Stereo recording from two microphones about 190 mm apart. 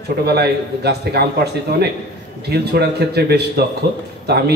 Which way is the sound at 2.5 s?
60° right (ahead or behind).